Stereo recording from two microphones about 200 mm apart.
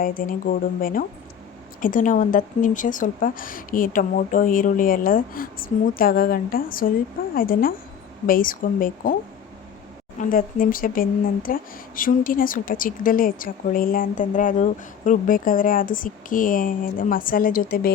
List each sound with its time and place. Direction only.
0.0 s speech: 45° left (ahead or behind)
10.2 s speech: 45° left (ahead or behind)